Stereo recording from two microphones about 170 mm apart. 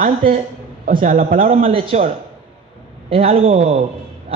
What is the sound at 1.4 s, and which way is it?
Speech, 35° right (ahead or behind).